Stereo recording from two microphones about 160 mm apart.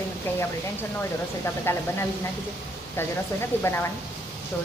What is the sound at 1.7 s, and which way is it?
Speech, 15° left (ahead or behind).